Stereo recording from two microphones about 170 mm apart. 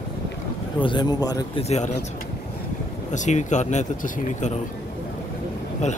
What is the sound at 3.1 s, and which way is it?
Speech, 45° left (ahead or behind).